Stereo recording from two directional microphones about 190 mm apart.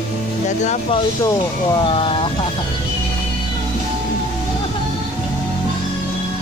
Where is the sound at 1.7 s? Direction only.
30° left (ahead or behind).